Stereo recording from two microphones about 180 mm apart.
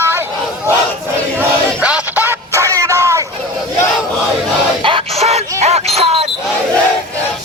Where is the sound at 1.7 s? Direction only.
5° right (ahead or behind).